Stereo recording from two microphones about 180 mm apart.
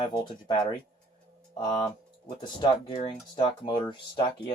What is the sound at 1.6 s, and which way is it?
Speech, 25° left (ahead or behind).